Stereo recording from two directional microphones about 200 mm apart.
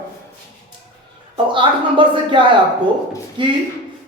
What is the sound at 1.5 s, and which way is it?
Speech, 25° right (ahead or behind).